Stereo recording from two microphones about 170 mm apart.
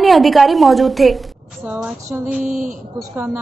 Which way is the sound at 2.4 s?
50° right (ahead or behind).